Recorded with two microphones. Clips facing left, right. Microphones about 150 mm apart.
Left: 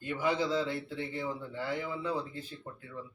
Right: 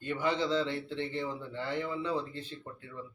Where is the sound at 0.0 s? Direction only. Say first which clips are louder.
Even; 5° left (ahead or behind).